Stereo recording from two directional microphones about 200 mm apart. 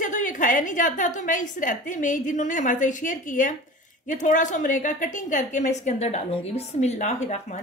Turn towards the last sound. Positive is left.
turn(degrees=35)  # may be behind; listen again after turning